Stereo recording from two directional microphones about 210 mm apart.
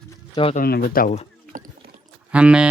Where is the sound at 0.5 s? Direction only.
45° left (ahead or behind).